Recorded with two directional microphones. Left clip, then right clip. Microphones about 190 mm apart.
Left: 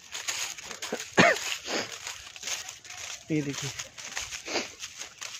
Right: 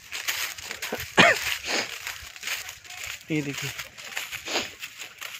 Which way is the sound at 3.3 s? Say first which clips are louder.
Right 1 dB; 15° right (ahead or behind).